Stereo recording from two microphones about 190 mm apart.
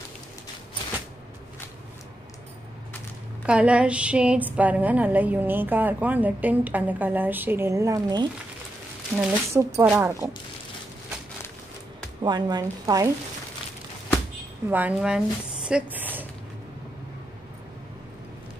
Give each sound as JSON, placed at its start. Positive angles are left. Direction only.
{"t": 3.4, "sound": "a woman's voice", "side_deg": -5}
{"t": 12.2, "sound": "speech", "side_deg": -20}
{"t": 14.7, "sound": "speech", "side_deg": -10}